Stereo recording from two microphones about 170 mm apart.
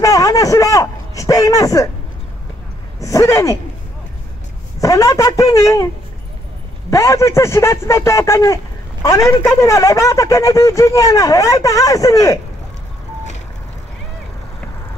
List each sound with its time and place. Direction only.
0.0 s a sound: 20° left (ahead or behind)
3.0 s speech: 20° left (ahead or behind)
4.7 s speech: 20° left (ahead or behind)
6.9 s speech: 20° left (ahead or behind)